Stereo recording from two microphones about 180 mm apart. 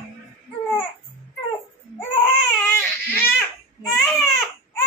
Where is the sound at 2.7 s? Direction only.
10° left (ahead or behind).